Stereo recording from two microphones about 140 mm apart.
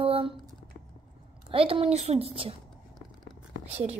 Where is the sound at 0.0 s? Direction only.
40° right (ahead or behind).